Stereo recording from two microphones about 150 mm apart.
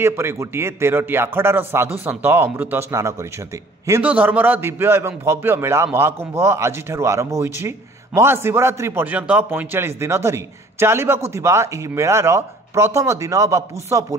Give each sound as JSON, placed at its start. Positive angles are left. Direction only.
{"t": 0.0, "sound": "speech", "side_deg": -15}